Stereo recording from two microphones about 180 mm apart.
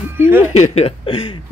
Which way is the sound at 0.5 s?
35° left (ahead or behind).